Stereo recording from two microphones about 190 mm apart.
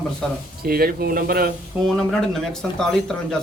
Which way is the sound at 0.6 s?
55° right (ahead or behind).